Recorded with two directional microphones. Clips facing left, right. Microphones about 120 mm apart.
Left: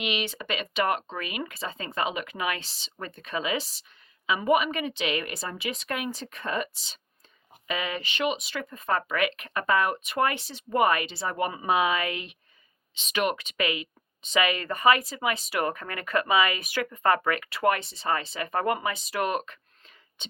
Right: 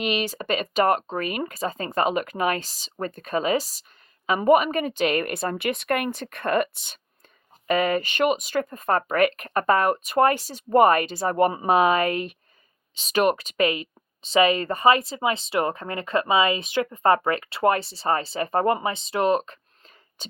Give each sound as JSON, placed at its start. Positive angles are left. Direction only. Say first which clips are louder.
{"t": 0.0, "sound": "a woman's voice", "louder": "right 5 dB", "side_deg": -40}
{"t": 7.7, "sound": "speech", "louder": "right 9 dB", "side_deg": -50}